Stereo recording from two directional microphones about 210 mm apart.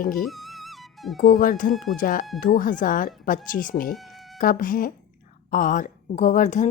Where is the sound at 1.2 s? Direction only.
40° left (ahead or behind).